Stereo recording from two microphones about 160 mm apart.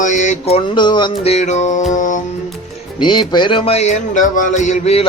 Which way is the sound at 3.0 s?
30° left (ahead or behind).